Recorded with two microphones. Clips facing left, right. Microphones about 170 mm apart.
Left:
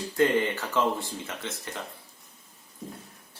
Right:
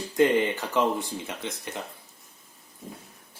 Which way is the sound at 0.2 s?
15° right (ahead or behind).